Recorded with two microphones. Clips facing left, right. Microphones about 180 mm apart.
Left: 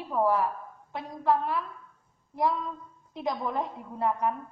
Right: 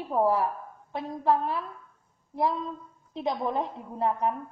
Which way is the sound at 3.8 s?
30° right (ahead or behind).